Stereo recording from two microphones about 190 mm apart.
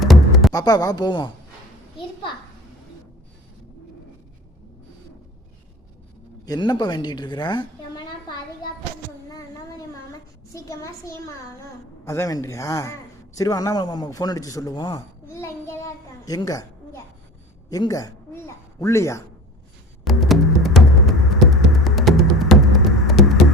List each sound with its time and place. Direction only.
0.0 s music: centre (ahead or behind)
0.5 s a woman's voice: 20° left (ahead or behind)
6.4 s a woman's voice: 20° left (ahead or behind)
10.1 s a child's voice: 15° left (ahead or behind)
20.1 s music: centre (ahead or behind)